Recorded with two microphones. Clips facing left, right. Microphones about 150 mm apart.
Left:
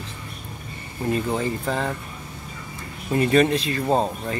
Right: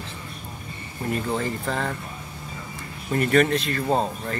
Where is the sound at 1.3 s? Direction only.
10° left (ahead or behind).